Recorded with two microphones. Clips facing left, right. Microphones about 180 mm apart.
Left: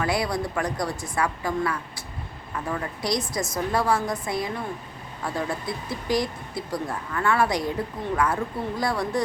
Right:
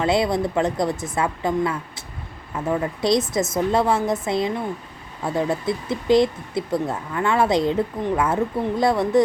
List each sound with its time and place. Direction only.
0.0 s speech: 25° right (ahead or behind)